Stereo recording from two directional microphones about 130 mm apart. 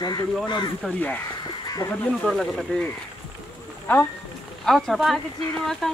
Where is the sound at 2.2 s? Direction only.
5° left (ahead or behind).